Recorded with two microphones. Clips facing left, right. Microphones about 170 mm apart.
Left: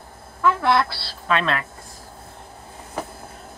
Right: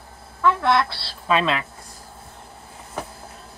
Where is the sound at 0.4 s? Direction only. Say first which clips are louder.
Even; 5° left (ahead or behind).